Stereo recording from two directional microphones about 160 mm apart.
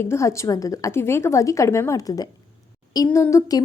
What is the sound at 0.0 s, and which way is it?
A woman's voice, 15° left (ahead or behind).